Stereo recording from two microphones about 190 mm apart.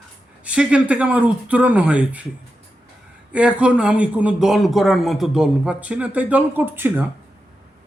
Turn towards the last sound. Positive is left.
turn(degrees=-10)  # may be behind; listen again after turning